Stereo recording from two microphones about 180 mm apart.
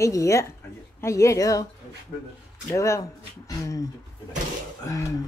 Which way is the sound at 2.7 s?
15° left (ahead or behind).